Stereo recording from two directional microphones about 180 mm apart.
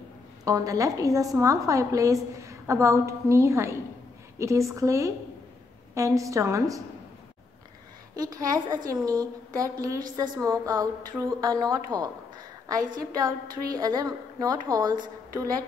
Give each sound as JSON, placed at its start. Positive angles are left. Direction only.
{"t": 0.5, "sound": "a woman's voice", "side_deg": -20}
{"t": 8.2, "sound": "a woman's voice", "side_deg": -20}